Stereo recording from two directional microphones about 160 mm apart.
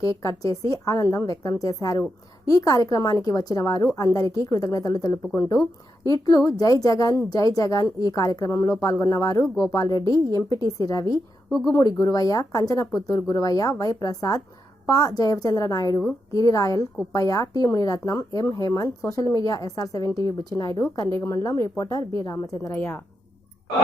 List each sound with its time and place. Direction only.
0.2 s speech: 20° left (ahead or behind)
10.0 s a woman's voice: 30° right (ahead or behind)
10.7 s speech: 20° left (ahead or behind)
11.4 s speech: centre (ahead or behind)
11.9 s speech: 20° left (ahead or behind)